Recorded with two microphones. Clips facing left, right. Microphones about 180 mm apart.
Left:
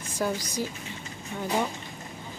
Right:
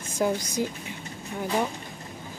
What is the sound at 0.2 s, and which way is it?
Speech, 15° right (ahead or behind).